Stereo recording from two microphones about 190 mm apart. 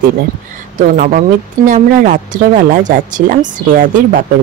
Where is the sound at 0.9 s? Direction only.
45° right (ahead or behind).